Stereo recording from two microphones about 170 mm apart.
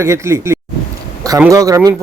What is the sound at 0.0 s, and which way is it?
Speech, 15° right (ahead or behind).